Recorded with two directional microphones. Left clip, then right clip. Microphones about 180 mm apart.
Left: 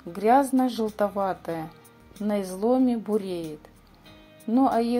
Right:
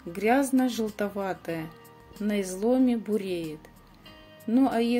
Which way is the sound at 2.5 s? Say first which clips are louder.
Left 1 dB; 5° right (ahead or behind).